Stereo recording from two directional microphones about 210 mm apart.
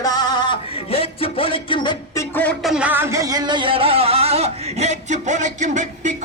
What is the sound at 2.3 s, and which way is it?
Music, 5° left (ahead or behind).